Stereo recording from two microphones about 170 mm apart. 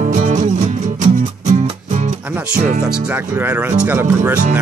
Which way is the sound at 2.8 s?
10° right (ahead or behind).